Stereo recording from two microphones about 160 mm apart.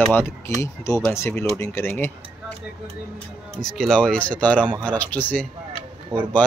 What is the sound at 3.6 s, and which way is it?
Speech, 5° left (ahead or behind).